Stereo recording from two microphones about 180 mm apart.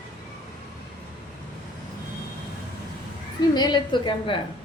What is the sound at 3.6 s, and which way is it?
Speech, 25° left (ahead or behind).